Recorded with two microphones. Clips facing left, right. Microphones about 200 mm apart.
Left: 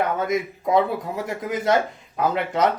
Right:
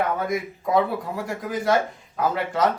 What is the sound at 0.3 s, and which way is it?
A man's voice, 20° left (ahead or behind).